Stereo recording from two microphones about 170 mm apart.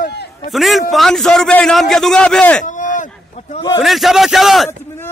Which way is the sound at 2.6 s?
50° left (ahead or behind).